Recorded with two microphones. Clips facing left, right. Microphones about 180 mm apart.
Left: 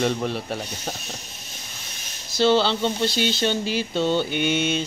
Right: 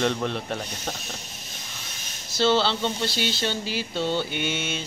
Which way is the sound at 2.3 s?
15° left (ahead or behind).